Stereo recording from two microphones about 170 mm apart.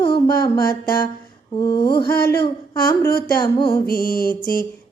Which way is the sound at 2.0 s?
65° left (ahead or behind).